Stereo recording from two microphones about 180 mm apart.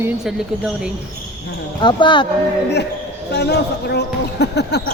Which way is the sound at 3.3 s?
65° left (ahead or behind).